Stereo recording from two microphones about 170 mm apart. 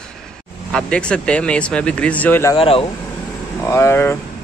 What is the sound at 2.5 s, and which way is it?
Speech, 35° left (ahead or behind).